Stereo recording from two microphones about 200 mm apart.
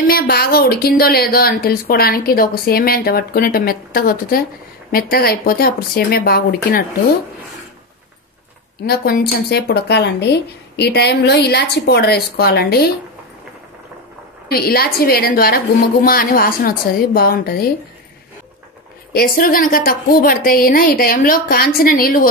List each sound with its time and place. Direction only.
0.0 s speech: 50° left (ahead or behind)
8.8 s speech: 50° left (ahead or behind)
14.5 s speech: 50° left (ahead or behind)
19.1 s speech: 45° left (ahead or behind)